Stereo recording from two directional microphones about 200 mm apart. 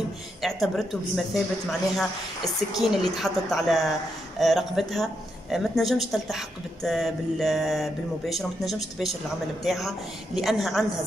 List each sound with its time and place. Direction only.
0.4 s a woman's voice: centre (ahead or behind)